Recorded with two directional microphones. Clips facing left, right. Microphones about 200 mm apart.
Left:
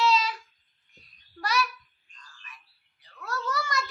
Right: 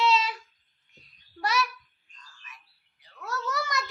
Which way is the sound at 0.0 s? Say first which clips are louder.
Even; 25° right (ahead or behind).